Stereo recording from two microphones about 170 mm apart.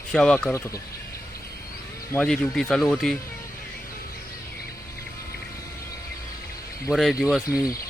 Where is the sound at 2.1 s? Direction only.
5° left (ahead or behind).